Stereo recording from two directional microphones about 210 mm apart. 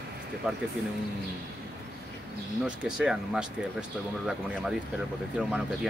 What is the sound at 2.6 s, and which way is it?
Speech, 5° right (ahead or behind).